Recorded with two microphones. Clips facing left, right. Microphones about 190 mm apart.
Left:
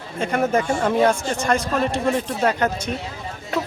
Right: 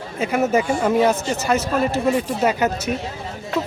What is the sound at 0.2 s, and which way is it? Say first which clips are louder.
Speech: right 1 dB; 5° right (ahead or behind).